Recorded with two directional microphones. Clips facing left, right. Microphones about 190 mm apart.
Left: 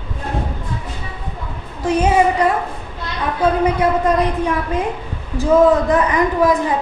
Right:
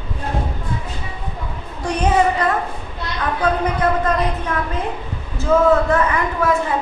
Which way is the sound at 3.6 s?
10° left (ahead or behind).